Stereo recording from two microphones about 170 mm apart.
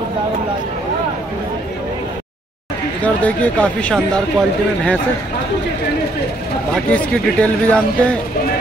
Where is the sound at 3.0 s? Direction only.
10° left (ahead or behind).